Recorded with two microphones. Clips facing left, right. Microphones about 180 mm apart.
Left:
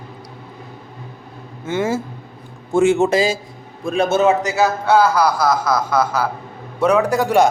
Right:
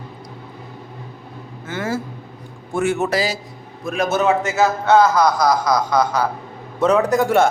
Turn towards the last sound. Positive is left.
turn(degrees=15)  # may be behind; listen again after turning